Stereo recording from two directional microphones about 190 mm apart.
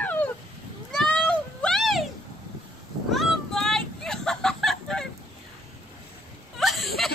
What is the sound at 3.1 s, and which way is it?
Chicken, centre (ahead or behind).